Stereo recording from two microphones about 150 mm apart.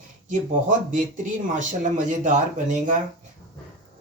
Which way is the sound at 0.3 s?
60° right (ahead or behind).